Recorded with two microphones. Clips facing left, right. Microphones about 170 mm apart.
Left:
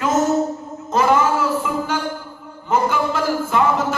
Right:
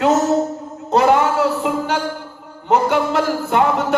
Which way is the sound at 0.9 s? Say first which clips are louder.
Right 2 dB; 70° right (ahead or behind).